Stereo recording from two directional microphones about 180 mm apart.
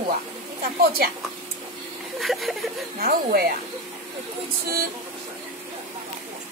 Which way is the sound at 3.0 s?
55° right (ahead or behind).